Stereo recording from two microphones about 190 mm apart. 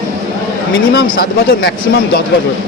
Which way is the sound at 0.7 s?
60° left (ahead or behind).